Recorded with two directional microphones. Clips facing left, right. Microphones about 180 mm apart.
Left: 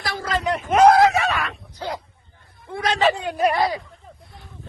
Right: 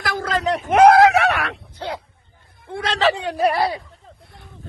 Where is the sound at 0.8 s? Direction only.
65° right (ahead or behind).